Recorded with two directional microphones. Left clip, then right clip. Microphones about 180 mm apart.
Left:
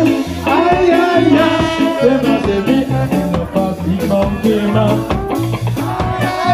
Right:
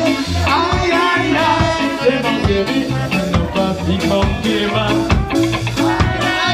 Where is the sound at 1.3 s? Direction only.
55° left (ahead or behind).